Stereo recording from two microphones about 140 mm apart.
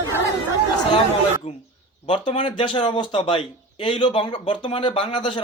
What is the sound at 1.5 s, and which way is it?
Speech, 60° left (ahead or behind).